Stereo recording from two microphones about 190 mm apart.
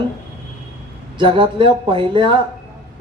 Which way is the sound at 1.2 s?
25° right (ahead or behind).